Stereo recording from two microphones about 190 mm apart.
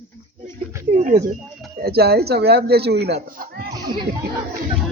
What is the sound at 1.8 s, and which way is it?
Speech, 55° right (ahead or behind).